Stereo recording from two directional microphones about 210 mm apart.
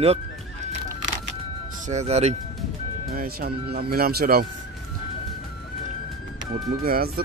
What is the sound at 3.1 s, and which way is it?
Speech, 45° right (ahead or behind).